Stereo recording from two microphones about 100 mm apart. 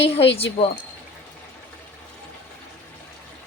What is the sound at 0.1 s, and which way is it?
Speech, 75° left (ahead or behind).